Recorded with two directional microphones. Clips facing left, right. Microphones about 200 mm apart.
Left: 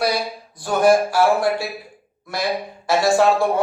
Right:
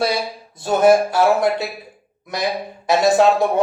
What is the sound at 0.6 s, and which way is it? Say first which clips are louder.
Speech: right 2 dB; 25° right (ahead or behind).